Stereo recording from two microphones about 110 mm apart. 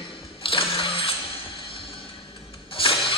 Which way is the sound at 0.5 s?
55° left (ahead or behind).